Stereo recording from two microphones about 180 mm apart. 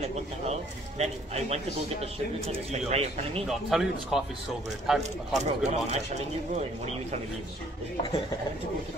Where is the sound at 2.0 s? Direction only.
35° right (ahead or behind).